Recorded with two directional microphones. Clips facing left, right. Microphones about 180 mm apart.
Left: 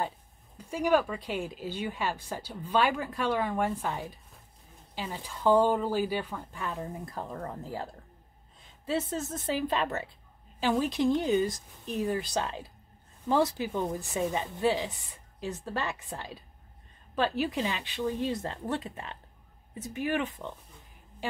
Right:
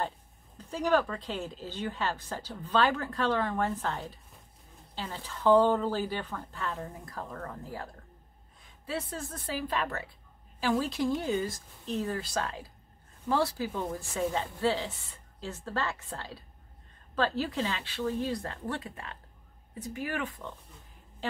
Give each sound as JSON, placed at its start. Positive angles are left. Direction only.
{"t": 0.6, "sound": "a woman's voice", "side_deg": 10}